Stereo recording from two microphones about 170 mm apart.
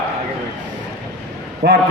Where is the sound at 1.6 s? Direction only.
65° right (ahead or behind).